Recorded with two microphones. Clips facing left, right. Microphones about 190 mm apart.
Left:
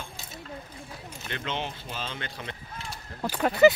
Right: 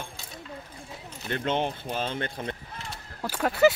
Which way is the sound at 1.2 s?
50° right (ahead or behind).